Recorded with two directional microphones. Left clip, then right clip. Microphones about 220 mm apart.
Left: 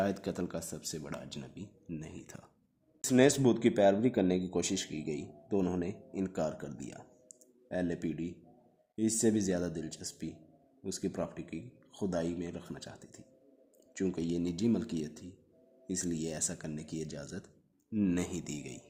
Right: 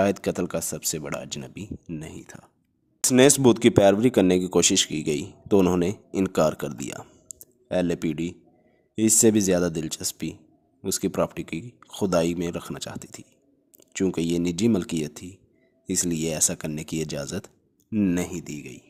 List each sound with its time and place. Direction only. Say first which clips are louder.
0.0 s speech: right 11 dB; 30° right (ahead or behind)
3.0 s speech: right 9 dB; 30° right (ahead or behind)